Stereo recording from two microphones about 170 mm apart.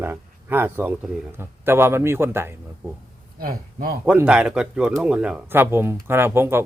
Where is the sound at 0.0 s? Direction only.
10° right (ahead or behind).